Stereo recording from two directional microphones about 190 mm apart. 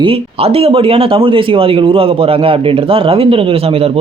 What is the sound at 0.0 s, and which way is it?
Speech, 30° right (ahead or behind).